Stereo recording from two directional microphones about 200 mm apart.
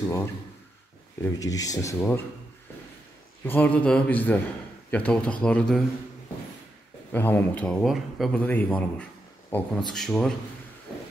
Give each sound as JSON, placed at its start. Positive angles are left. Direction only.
{"t": 1.2, "sound": "a man's voice", "side_deg": 15}
{"t": 3.4, "sound": "a man's voice", "side_deg": 10}
{"t": 7.1, "sound": "a man's voice", "side_deg": 10}